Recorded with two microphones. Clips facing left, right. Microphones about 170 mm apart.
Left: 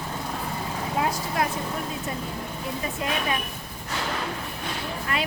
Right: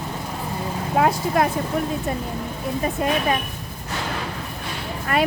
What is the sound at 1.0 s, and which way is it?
Speech, 70° right (ahead or behind).